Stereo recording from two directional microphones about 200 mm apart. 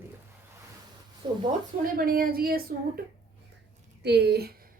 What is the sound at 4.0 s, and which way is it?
Speech, 55° right (ahead or behind).